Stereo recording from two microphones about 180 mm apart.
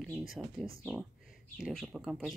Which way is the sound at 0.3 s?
Centre (ahead or behind).